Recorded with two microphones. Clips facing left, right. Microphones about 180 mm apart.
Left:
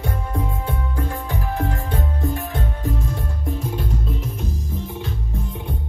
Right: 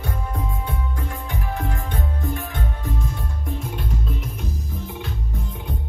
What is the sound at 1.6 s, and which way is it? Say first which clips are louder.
Music: left 3 dB; 35° left (ahead or behind).